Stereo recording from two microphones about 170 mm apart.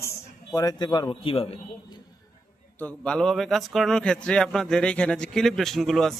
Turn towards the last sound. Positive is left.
turn(degrees=0)  # may be behind; listen again after turning